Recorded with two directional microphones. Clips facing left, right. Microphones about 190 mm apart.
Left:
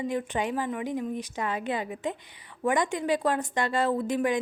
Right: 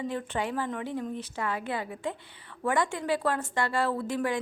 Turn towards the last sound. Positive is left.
turn(degrees=20)  # may be behind; listen again after turning